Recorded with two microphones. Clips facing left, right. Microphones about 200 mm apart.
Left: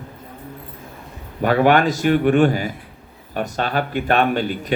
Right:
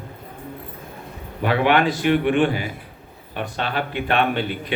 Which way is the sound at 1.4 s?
45° left (ahead or behind).